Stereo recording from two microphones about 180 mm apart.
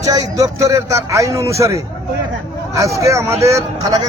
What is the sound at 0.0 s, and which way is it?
Speech, 20° right (ahead or behind).